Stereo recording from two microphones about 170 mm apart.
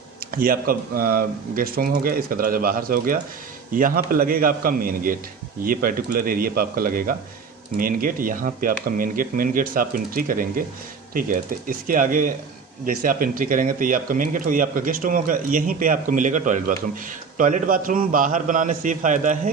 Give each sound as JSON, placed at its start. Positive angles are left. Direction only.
{"t": 0.3, "sound": "speech", "side_deg": -55}